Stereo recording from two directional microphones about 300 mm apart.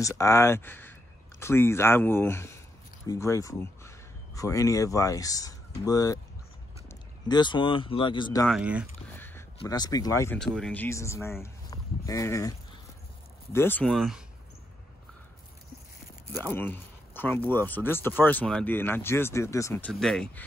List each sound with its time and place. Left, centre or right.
0.0 s speech: centre
8.5 s speech: centre
9.1 s a sound: centre
9.6 s speech: centre
11.4 s a sound: centre
13.5 s speech: centre
16.4 s speech: centre